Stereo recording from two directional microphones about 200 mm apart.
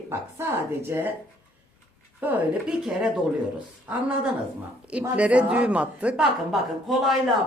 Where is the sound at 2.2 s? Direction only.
5° right (ahead or behind).